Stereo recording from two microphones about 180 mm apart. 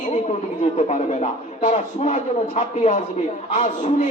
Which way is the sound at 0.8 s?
40° left (ahead or behind).